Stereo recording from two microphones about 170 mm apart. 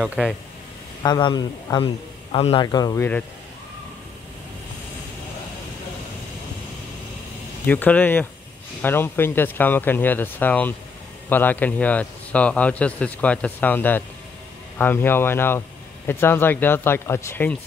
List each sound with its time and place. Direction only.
0.0 s speech: 5° right (ahead or behind)
1.0 s a man's voice: 25° left (ahead or behind)
7.6 s speech: 10° left (ahead or behind)